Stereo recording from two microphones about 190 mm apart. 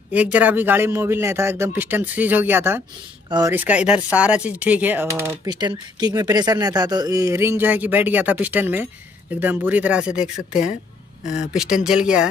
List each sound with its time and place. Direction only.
0.1 s speech: 10° right (ahead or behind)
3.5 s speech: 5° right (ahead or behind)
5.5 s speech: 20° right (ahead or behind); by 12.3 s 5° right (ahead or behind)